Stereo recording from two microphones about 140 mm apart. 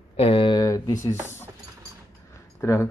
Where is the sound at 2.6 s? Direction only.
20° left (ahead or behind).